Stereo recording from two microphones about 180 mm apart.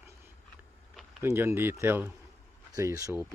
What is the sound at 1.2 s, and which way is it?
Speech, 15° right (ahead or behind).